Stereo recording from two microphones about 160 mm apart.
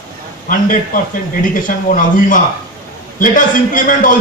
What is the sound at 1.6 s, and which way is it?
A man's voice, 55° left (ahead or behind).